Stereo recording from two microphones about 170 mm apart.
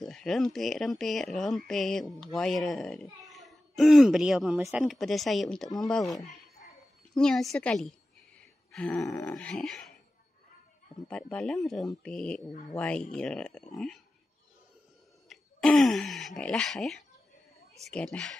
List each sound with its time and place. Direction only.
0.0 s speech: 5° left (ahead or behind)
4.6 s speech: 15° right (ahead or behind)
4.8 s speech: centre (ahead or behind)
8.7 s a sound: 5° left (ahead or behind)
9.0 s grunt: 20° left (ahead or behind)
9.3 s speech: 5° left (ahead or behind)
11.1 s speech: 5° left (ahead or behind)
15.2 s speech: centre (ahead or behind)